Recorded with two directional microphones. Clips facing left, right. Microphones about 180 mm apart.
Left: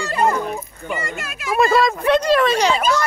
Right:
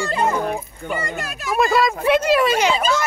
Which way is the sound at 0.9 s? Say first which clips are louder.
Right 1 dB; 40° right (ahead or behind).